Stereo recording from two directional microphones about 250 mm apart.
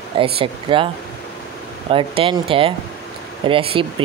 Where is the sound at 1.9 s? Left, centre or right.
Right.